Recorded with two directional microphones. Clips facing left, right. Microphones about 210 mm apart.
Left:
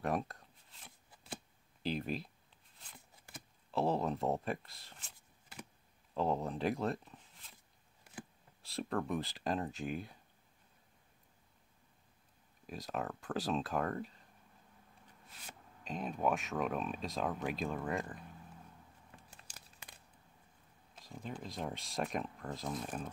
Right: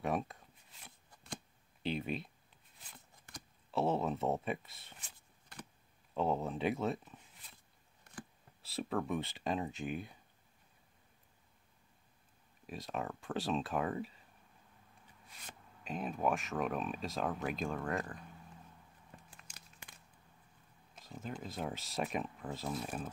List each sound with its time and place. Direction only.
0.0 s shuffling cards: centre (ahead or behind)
3.3 s speech: centre (ahead or behind)
5.0 s a sound: 5° left (ahead or behind)
6.1 s speech: centre (ahead or behind)
8.6 s speech: centre (ahead or behind)
12.6 s speech: centre (ahead or behind)
15.8 s speech: centre (ahead or behind)
19.5 s a sound: 35° left (ahead or behind)
20.9 s speech: centre (ahead or behind)